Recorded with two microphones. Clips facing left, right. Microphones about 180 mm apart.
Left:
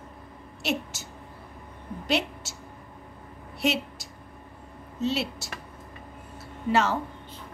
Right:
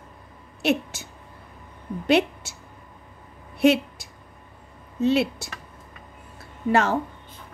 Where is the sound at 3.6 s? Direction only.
55° right (ahead or behind).